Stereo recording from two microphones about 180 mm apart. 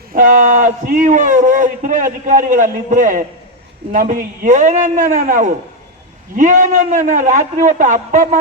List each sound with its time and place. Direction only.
0.1 s a man's voice: 45° right (ahead or behind)